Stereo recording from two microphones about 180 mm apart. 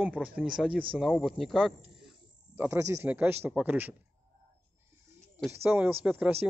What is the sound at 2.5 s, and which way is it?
Speech, 15° right (ahead or behind).